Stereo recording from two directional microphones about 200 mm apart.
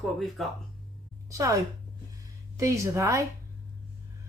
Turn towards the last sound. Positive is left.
turn(degrees=-15)  # may be behind; listen again after turning